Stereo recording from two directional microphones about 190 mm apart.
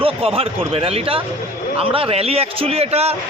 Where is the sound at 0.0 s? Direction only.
30° right (ahead or behind).